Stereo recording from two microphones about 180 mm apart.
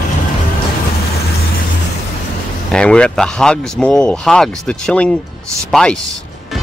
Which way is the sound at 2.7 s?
5° left (ahead or behind).